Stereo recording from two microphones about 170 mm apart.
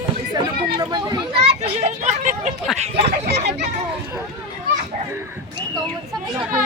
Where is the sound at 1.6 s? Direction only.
40° right (ahead or behind).